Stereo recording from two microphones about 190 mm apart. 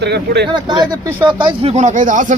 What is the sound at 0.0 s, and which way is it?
Speech, 60° right (ahead or behind).